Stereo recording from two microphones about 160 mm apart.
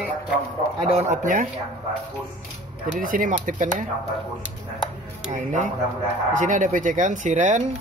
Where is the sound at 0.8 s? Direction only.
40° right (ahead or behind).